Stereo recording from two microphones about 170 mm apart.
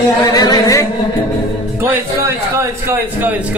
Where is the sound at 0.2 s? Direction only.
20° left (ahead or behind).